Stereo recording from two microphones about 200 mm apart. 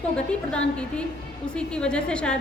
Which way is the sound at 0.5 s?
5° left (ahead or behind).